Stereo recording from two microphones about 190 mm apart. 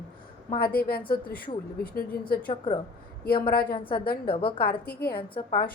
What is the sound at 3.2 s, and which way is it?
A woman's voice, 50° left (ahead or behind).